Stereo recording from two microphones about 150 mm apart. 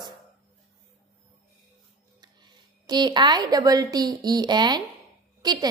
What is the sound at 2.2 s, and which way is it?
A woman's voice, 30° right (ahead or behind).